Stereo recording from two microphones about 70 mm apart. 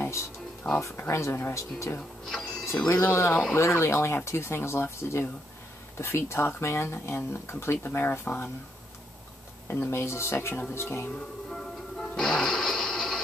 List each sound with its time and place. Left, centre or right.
0.0 s music: left
0.9 s speech: left
2.2 s clock: centre
2.9 s speech: left
9.7 s speech: left
11.5 s music: centre